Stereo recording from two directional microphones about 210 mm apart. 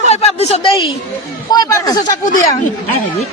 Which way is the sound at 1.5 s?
20° left (ahead or behind).